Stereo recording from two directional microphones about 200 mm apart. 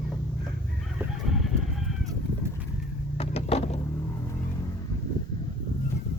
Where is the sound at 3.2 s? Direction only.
30° left (ahead or behind).